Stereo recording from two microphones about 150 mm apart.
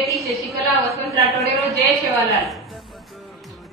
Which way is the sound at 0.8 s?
20° right (ahead or behind).